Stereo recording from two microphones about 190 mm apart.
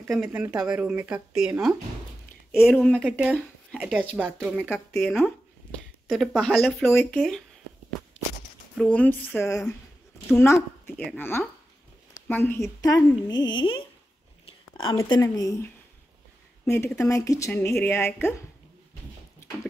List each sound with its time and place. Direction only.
0.1 s speech: 5° right (ahead or behind)
8.7 s speech: 5° left (ahead or behind); by 13.7 s 25° left (ahead or behind)
14.4 s a sound: 25° left (ahead or behind)
15.0 s speech: 15° left (ahead or behind)